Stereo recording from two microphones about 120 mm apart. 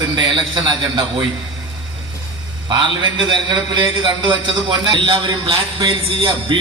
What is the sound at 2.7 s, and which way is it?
A man's voice, 40° right (ahead or behind).